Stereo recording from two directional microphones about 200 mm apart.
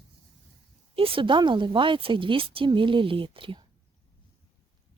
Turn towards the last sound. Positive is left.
turn(degrees=-25)  # may be behind; listen again after turning